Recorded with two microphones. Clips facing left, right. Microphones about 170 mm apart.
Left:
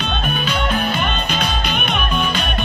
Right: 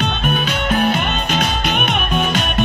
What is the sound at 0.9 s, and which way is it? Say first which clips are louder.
Music: right 2 dB; 50° right (ahead or behind).